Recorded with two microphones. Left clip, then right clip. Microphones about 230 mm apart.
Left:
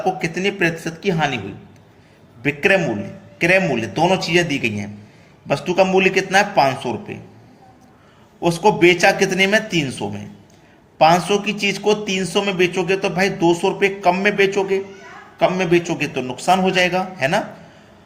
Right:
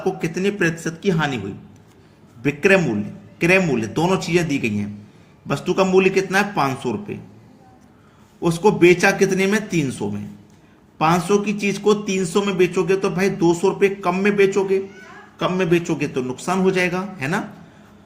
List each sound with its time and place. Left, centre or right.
0.2 s a man's voice: right
2.4 s a man's voice: right
8.4 s a man's voice: right